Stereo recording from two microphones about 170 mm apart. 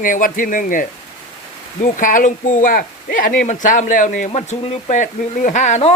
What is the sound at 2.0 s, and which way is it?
Speech, 50° left (ahead or behind).